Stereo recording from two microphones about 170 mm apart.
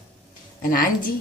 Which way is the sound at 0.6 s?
55° left (ahead or behind).